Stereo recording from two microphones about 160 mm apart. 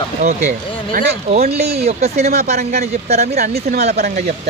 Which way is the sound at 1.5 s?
40° right (ahead or behind).